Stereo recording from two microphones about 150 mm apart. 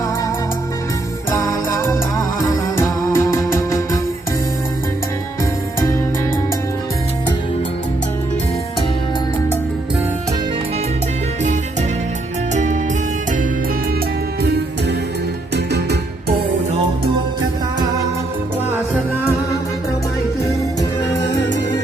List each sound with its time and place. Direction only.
1.3 s music: 20° left (ahead or behind)
15.5 s music: 90° right